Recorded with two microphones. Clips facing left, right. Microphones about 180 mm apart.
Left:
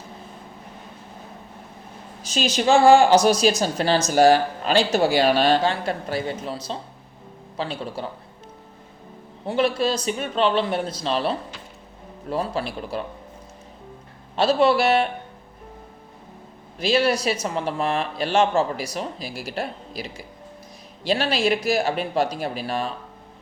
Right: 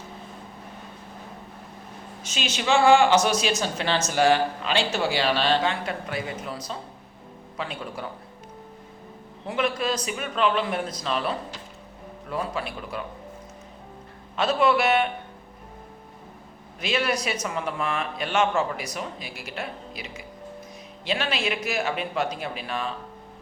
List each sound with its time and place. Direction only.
2.2 s a woman's voice: 35° left (ahead or behind)
9.5 s a woman's voice: 30° left (ahead or behind)
14.3 s a woman's voice: 30° left (ahead or behind)
16.8 s a woman's voice: 30° left (ahead or behind)